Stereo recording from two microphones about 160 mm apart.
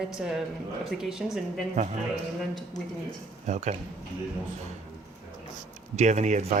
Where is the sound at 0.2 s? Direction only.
5° right (ahead or behind).